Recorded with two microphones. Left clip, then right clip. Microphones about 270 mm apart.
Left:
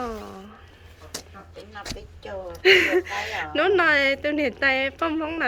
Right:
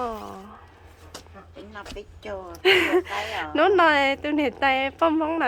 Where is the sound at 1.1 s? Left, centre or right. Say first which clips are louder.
Left 5 dB; left.